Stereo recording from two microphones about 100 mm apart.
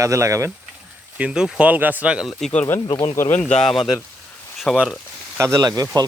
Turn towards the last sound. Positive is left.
turn(degrees=-40)  # may be behind; listen again after turning